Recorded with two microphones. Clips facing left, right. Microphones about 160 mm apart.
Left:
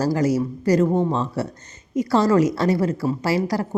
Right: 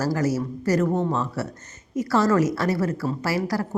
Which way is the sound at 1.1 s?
25° left (ahead or behind).